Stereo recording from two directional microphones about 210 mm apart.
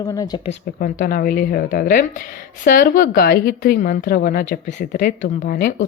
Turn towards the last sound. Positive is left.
turn(degrees=45)  # may be behind; listen again after turning